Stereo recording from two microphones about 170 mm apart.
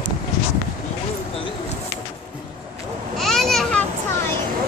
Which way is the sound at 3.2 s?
Centre (ahead or behind).